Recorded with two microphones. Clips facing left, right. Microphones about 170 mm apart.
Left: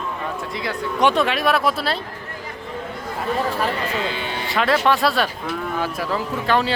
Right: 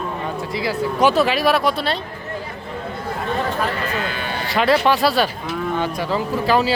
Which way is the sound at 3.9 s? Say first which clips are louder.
Even; 25° left (ahead or behind).